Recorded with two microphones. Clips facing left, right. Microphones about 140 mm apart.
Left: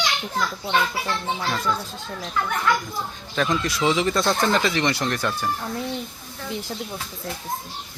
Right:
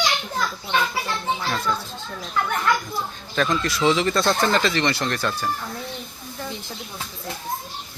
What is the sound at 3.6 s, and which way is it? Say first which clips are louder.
A man's voice: right 1 dB; 15° left (ahead or behind).